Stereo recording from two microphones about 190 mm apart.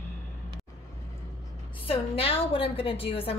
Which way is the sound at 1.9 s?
30° left (ahead or behind).